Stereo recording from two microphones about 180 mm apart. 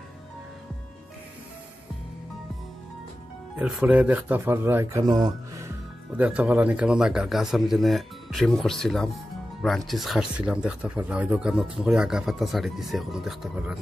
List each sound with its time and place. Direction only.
3.5 s speech: 5° right (ahead or behind)
6.1 s speech: 10° right (ahead or behind)